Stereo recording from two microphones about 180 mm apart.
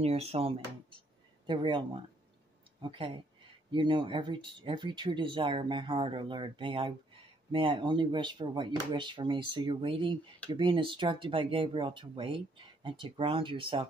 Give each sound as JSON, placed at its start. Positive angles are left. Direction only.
{"t": 0.0, "sound": "speech", "side_deg": -35}